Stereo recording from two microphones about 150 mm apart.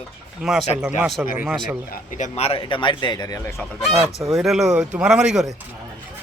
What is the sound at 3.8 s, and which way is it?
A man's voice, centre (ahead or behind).